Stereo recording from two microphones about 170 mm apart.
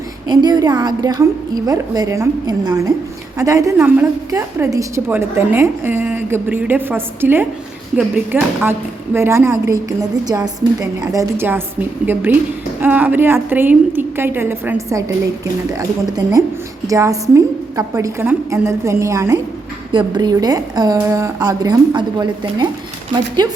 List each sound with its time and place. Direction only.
0.3 s a woman's voice: 25° right (ahead or behind)